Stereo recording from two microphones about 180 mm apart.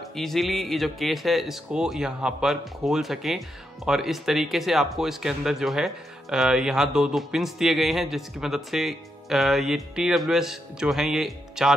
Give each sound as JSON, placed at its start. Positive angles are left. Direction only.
{"t": 0.1, "sound": "speech", "side_deg": 0}